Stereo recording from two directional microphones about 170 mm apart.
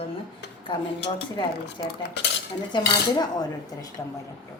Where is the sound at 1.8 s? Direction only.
20° left (ahead or behind).